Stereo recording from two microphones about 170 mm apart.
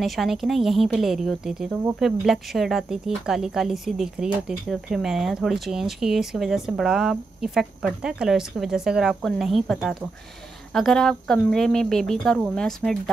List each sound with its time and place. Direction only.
0.0 s speech: centre (ahead or behind)